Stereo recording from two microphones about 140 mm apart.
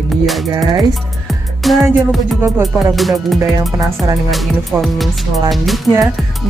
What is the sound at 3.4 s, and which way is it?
Music, 25° right (ahead or behind).